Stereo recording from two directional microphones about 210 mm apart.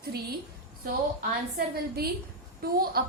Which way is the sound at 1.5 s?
45° right (ahead or behind).